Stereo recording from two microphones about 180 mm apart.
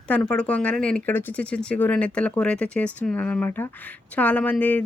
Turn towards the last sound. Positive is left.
turn(degrees=10)  # may be behind; listen again after turning